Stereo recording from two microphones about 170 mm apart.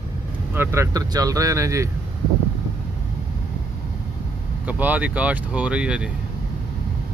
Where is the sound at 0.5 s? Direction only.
15° right (ahead or behind).